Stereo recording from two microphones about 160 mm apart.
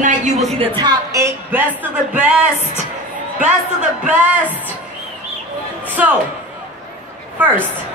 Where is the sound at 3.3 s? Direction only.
5° right (ahead or behind).